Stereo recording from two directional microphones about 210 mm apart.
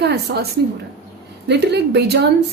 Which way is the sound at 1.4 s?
55° right (ahead or behind).